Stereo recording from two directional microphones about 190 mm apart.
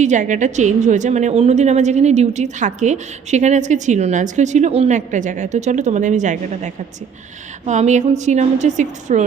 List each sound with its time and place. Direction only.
0.0 s a woman's voice: 40° right (ahead or behind)
7.6 s a woman's voice: 40° right (ahead or behind)